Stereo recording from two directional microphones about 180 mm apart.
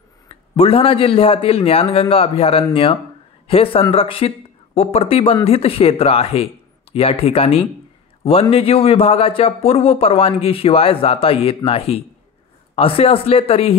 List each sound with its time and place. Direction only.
0.3 s a man's voice: 30° left (ahead or behind)